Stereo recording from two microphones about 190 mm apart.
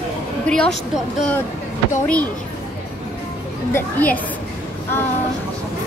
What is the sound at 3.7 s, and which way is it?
Speech, 10° left (ahead or behind).